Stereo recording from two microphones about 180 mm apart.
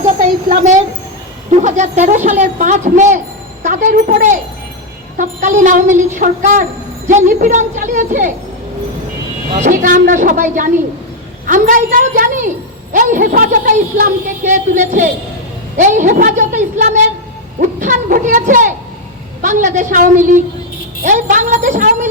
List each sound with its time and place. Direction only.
0.0 s a woman's voice: 45° right (ahead or behind)
9.6 s a woman's voice: 50° right (ahead or behind)